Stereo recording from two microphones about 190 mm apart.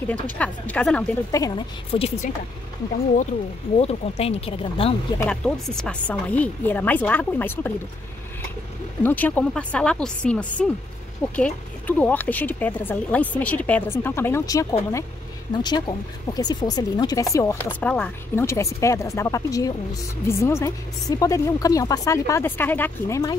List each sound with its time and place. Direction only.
0.1 s speech: 5° left (ahead or behind)
1.3 s speech: 20° left (ahead or behind)
1.9 s speech: 30° left (ahead or behind)
3.7 s speech: 30° left (ahead or behind)
5.2 s speech: 5° left (ahead or behind)
9.0 s speech: 10° left (ahead or behind)